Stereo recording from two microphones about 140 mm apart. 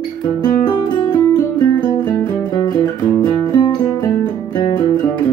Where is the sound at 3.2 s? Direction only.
30° left (ahead or behind).